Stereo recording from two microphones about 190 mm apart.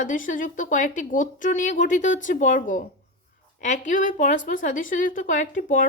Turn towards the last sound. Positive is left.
turn(degrees=40)  # may be behind; listen again after turning